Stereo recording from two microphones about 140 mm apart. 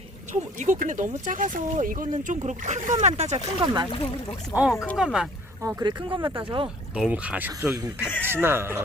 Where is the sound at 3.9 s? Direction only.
45° left (ahead or behind).